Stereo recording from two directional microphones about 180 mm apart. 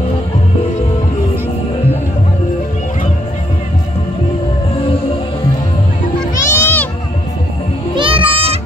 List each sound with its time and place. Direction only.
6.3 s music: 10° left (ahead or behind)
7.9 s children playing: 30° right (ahead or behind)